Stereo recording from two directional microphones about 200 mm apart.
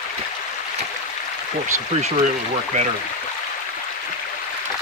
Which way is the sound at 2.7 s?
35° right (ahead or behind).